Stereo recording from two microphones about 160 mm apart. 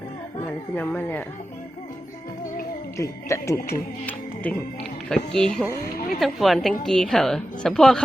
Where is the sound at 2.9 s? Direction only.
20° left (ahead or behind).